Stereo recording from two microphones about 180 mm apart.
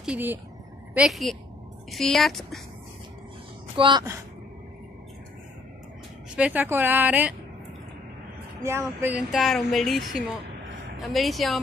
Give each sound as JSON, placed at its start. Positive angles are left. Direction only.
{"t": 0.0, "sound": "speech", "side_deg": -10}
{"t": 3.7, "sound": "a woman's voice", "side_deg": -25}
{"t": 6.3, "sound": "a woman's voice", "side_deg": -10}
{"t": 8.6, "sound": "a woman's voice", "side_deg": -15}
{"t": 9.3, "sound": "speech", "side_deg": 0}